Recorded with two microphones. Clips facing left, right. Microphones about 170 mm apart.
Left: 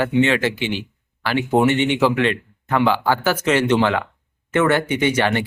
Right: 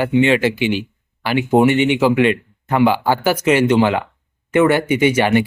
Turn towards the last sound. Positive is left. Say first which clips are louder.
# right 4 dB
turn(degrees=-10)  # may be behind; listen again after turning